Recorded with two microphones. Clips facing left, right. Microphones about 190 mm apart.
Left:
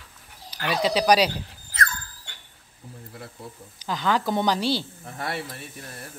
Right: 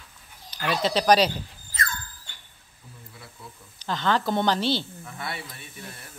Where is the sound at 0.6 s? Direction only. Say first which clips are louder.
Left 1 dB; 10° left (ahead or behind).